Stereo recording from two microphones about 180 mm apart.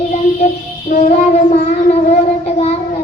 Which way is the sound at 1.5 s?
35° left (ahead or behind).